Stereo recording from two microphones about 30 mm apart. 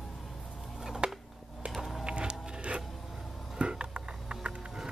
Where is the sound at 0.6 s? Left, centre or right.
Centre.